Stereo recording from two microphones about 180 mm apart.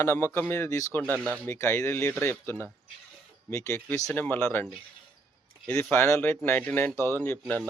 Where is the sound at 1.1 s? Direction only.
15° right (ahead or behind).